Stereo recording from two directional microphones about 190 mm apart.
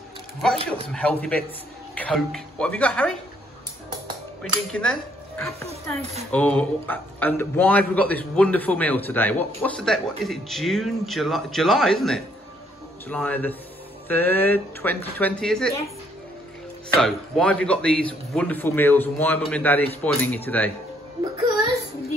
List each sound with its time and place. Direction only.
0.7 s speech: 5° left (ahead or behind)
4.4 s speech: 5° left (ahead or behind)
5.7 s speech: 35° right (ahead or behind)
6.3 s a man's voice: 5° left (ahead or behind)
17.0 s a man's voice: 5° left (ahead or behind)